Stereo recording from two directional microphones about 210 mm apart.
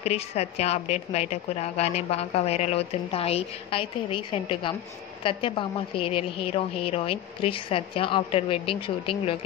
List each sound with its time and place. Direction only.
0.0 s a woman's voice: 30° left (ahead or behind)